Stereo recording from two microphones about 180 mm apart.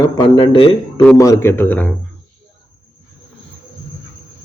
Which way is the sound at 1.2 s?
15° left (ahead or behind).